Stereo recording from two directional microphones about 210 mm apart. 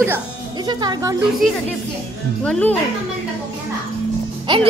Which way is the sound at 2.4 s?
5° left (ahead or behind).